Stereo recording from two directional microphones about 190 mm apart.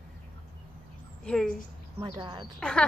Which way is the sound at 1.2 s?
5° left (ahead or behind).